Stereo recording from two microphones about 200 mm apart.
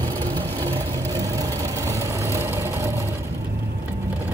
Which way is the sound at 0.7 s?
15° right (ahead or behind).